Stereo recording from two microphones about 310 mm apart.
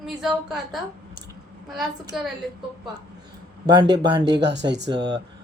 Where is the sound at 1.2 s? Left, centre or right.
Right.